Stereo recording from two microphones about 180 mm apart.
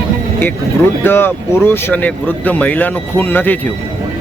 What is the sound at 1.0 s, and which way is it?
Speech, 10° left (ahead or behind).